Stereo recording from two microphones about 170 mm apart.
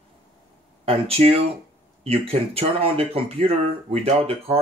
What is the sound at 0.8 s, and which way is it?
Speech, 35° right (ahead or behind).